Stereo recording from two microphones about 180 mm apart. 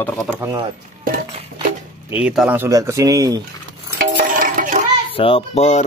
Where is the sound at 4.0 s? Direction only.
50° right (ahead or behind).